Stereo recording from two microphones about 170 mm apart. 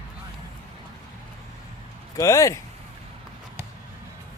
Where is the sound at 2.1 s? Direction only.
20° left (ahead or behind).